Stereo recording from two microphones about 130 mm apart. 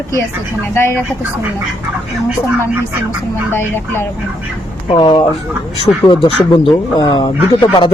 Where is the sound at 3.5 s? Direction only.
20° left (ahead or behind).